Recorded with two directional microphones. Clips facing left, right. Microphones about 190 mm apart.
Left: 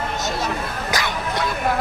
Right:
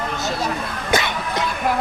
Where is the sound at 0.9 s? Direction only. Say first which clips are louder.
Right 4 dB; 20° right (ahead or behind).